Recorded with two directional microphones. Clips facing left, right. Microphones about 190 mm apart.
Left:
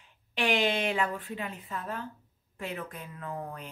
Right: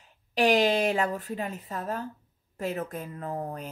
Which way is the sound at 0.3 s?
40° right (ahead or behind).